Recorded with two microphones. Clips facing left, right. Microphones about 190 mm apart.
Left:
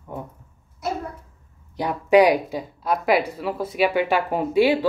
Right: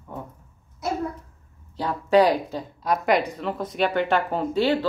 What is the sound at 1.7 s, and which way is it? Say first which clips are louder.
Speech: left 2 dB; 15° left (ahead or behind).